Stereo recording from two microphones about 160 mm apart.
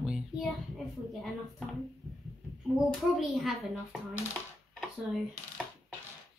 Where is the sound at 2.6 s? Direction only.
Centre (ahead or behind).